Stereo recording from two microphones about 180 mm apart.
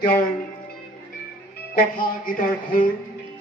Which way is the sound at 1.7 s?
50° left (ahead or behind).